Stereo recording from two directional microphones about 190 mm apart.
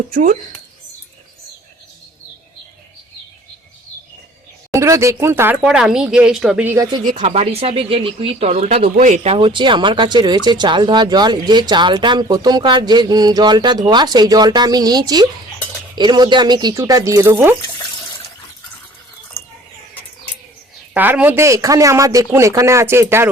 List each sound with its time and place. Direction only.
0.1 s speech: 45° right (ahead or behind)
4.7 s speech: 15° right (ahead or behind)
7.0 s speech: 40° right (ahead or behind); by 17.5 s 15° right (ahead or behind)
20.9 s speech: 10° right (ahead or behind)